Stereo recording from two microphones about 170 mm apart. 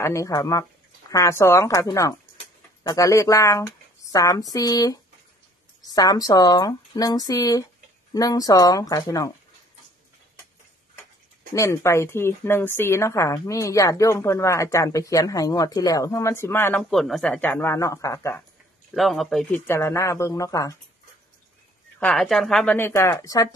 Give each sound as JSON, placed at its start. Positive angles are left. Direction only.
{"t": 0.0, "sound": "speech", "side_deg": 15}
{"t": 11.5, "sound": "a woman's voice", "side_deg": 15}
{"t": 16.9, "sound": "a woman's voice", "side_deg": 0}
{"t": 18.9, "sound": "a woman's voice", "side_deg": 0}
{"t": 19.7, "sound": "a woman's voice", "side_deg": 15}
{"t": 22.0, "sound": "a woman's voice", "side_deg": 0}
{"t": 22.8, "sound": "a woman's voice", "side_deg": 15}